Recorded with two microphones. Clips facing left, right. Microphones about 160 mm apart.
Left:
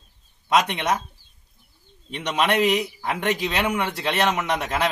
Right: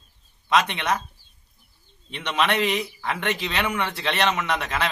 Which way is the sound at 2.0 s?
40° left (ahead or behind).